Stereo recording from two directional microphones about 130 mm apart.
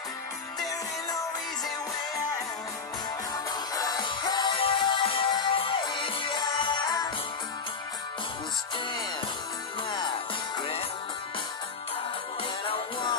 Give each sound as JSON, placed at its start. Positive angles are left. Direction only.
{"t": 3.7, "sound": "music", "side_deg": 30}
{"t": 9.8, "sound": "music", "side_deg": 35}
{"t": 12.6, "sound": "music", "side_deg": 40}